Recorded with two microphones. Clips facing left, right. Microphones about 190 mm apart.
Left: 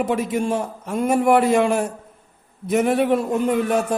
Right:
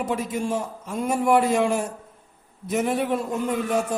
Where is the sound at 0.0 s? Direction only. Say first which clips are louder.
Left 5 dB; 65° left (ahead or behind).